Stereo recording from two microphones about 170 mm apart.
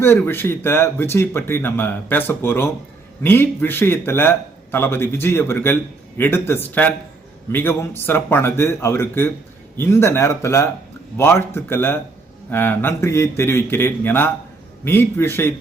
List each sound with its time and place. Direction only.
0.0 s speech: 15° left (ahead or behind)